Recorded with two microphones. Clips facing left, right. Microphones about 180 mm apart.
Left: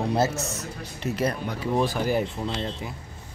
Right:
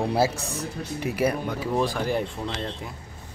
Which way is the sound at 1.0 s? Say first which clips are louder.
Right 2 dB; 10° right (ahead or behind).